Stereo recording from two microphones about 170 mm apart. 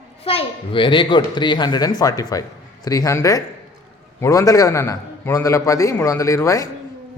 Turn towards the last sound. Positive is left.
turn(degrees=20)  # may be behind; listen again after turning